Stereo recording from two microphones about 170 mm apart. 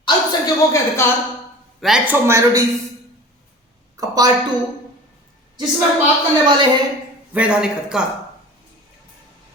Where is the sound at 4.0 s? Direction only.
20° right (ahead or behind).